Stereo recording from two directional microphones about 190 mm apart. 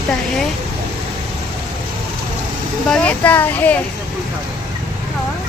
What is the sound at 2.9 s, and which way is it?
Speech, 5° left (ahead or behind).